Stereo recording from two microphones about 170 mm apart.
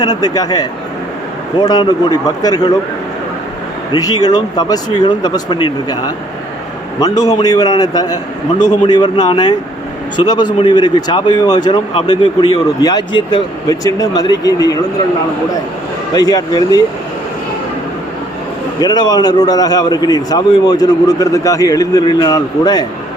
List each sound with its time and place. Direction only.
0.0 s speech: 25° left (ahead or behind)
3.9 s speech: 25° left (ahead or behind)
16.1 s speech: 25° left (ahead or behind)
18.8 s speech: 25° left (ahead or behind)